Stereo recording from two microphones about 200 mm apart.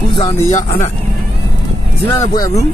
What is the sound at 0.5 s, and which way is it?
Speech, 40° left (ahead or behind).